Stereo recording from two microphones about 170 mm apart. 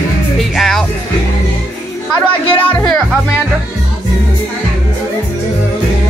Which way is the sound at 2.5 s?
10° left (ahead or behind).